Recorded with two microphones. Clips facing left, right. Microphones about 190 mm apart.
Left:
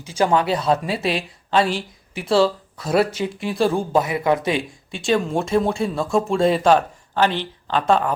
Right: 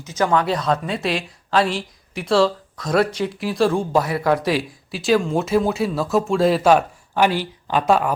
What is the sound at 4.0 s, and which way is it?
Speech, 15° left (ahead or behind).